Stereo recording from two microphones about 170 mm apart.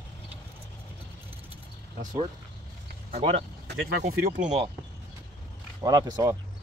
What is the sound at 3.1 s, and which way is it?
Speech, 40° right (ahead or behind).